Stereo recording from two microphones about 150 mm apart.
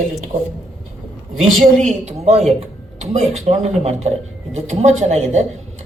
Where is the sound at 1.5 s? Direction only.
70° right (ahead or behind).